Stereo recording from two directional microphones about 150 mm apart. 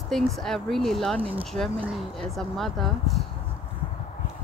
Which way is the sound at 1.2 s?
40° right (ahead or behind).